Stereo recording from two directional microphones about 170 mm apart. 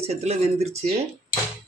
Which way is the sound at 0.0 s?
40° right (ahead or behind).